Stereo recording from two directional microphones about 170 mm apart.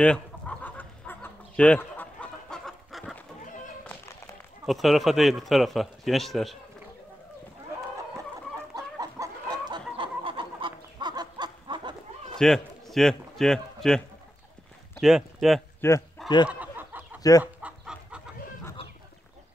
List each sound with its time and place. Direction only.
0.0 s chicken: 5° left (ahead or behind)
4.6 s a man's voice: centre (ahead or behind)
8.7 s chicken: 20° right (ahead or behind)
12.4 s speech: centre (ahead or behind)
15.8 s speech: 15° left (ahead or behind)
16.4 s a sound: 10° right (ahead or behind)
17.4 s chicken: 5° right (ahead or behind)